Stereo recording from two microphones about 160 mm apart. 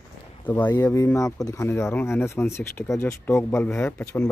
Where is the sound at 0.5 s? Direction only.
15° left (ahead or behind).